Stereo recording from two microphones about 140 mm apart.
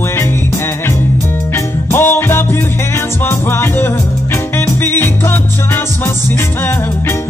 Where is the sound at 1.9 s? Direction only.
15° left (ahead or behind).